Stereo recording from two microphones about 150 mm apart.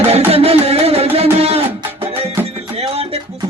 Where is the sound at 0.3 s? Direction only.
40° right (ahead or behind).